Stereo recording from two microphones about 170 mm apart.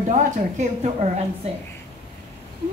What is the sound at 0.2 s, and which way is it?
Speech, 45° right (ahead or behind).